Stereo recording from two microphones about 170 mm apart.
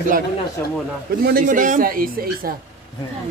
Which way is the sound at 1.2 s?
55° right (ahead or behind).